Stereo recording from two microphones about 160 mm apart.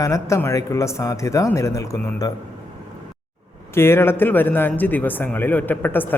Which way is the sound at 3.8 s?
15° left (ahead or behind).